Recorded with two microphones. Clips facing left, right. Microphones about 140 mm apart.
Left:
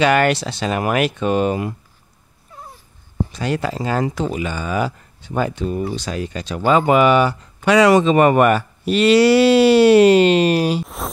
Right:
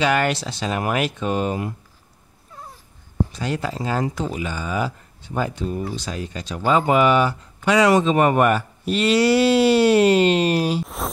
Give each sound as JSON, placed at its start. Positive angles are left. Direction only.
{"t": 0.0, "sound": "speech", "side_deg": 70}
{"t": 3.3, "sound": "speech", "side_deg": 70}
{"t": 11.0, "sound": "a sound", "side_deg": 0}